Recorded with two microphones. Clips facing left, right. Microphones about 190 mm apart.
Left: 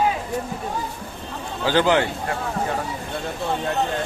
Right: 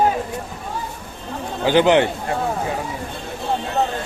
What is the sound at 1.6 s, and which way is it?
Speech, 20° right (ahead or behind).